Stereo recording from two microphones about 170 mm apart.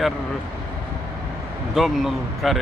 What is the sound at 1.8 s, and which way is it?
Speech, centre (ahead or behind).